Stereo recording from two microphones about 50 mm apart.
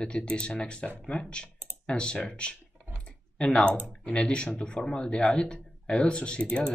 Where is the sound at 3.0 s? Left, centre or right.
Centre.